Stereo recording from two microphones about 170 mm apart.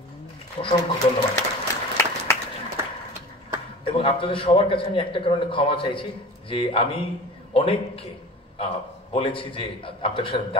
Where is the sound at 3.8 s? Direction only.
35° left (ahead or behind).